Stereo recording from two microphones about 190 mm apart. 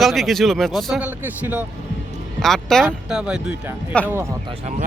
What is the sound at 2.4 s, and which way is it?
A man's voice, centre (ahead or behind).